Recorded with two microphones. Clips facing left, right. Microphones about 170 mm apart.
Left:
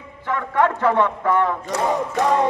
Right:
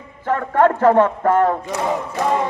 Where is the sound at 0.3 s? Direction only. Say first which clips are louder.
Right 4 dB; 45° right (ahead or behind).